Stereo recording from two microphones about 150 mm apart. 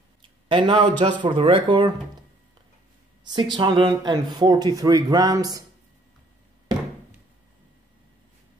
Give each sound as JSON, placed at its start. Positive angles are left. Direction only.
{"t": 0.5, "sound": "speech", "side_deg": -35}
{"t": 3.3, "sound": "speech", "side_deg": -30}